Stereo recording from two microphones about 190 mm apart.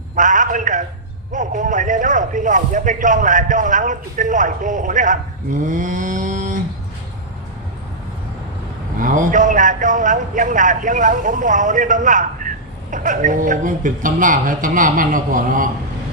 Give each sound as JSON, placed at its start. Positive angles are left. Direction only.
{"t": 0.2, "sound": "a man's voice", "side_deg": -45}
{"t": 9.0, "sound": "a man's voice", "side_deg": -45}